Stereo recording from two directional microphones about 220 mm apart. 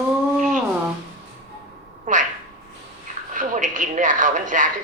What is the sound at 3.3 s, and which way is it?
A woman's voice, 35° right (ahead or behind).